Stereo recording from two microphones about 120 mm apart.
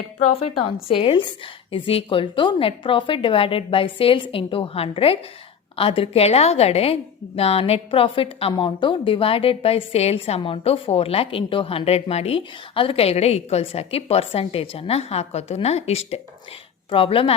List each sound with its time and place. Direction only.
0.6 s a woman's voice: 50° left (ahead or behind)
16.9 s a woman's voice: 50° left (ahead or behind)